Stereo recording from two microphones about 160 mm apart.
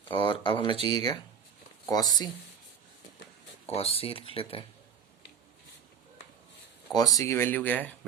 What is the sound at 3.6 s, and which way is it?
Speech, 40° left (ahead or behind).